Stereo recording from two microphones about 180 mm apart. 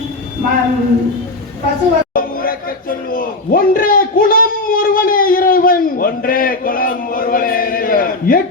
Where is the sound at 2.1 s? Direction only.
50° left (ahead or behind).